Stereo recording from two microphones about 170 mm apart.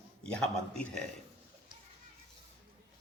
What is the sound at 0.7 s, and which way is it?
Speech, 5° left (ahead or behind).